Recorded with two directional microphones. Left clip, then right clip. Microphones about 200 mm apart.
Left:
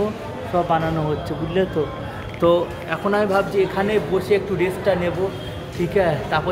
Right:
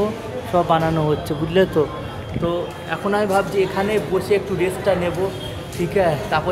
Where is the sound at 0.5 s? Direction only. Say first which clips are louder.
Right 2 dB; 20° right (ahead or behind).